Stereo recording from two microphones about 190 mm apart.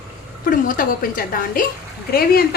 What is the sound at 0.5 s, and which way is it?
A woman's voice, 45° left (ahead or behind).